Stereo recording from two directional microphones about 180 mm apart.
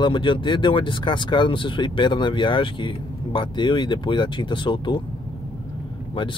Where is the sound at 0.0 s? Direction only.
25° left (ahead or behind).